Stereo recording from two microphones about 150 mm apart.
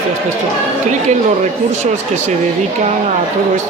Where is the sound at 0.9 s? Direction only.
50° right (ahead or behind).